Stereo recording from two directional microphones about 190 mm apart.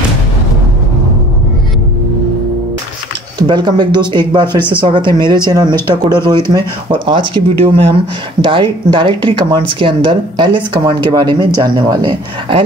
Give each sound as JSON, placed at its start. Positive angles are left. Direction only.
{"t": 3.3, "sound": "speech", "side_deg": -25}
{"t": 4.6, "sound": "speech", "side_deg": 10}
{"t": 4.8, "sound": "speech", "side_deg": -25}